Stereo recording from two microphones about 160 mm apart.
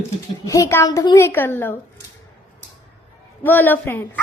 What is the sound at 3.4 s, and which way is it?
Speech, 10° left (ahead or behind).